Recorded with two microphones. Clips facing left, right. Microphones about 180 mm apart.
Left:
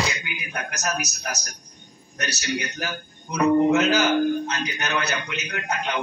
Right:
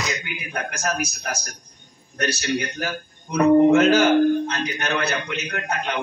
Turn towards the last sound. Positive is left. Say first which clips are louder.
# right 1 dB
turn(degrees=-60)  # may be behind; listen again after turning